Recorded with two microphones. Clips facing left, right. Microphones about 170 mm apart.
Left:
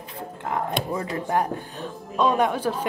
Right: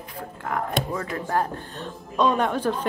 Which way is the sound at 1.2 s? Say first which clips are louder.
Left 1 dB; 15° left (ahead or behind).